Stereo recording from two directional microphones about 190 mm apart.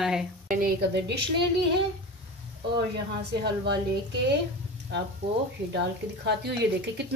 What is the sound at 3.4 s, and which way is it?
Speech, 60° right (ahead or behind).